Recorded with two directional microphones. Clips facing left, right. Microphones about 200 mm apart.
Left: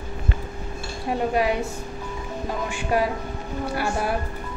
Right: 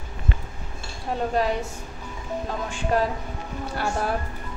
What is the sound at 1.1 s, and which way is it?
Speech, 10° left (ahead or behind).